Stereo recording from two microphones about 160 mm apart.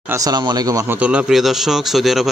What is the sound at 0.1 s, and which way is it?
Speech, 25° right (ahead or behind).